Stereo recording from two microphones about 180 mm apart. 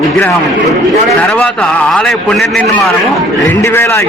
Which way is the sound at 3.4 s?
15° left (ahead or behind).